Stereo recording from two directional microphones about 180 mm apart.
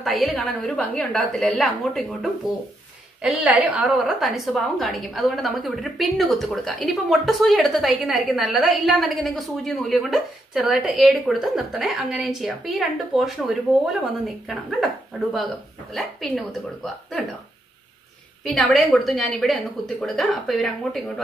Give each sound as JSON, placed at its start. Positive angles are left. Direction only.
{"t": 0.0, "sound": "a woman's voice", "side_deg": 0}
{"t": 18.4, "sound": "a woman's voice", "side_deg": 0}